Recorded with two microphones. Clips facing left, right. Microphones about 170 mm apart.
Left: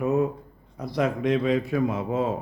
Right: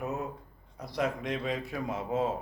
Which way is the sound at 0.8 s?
90° left.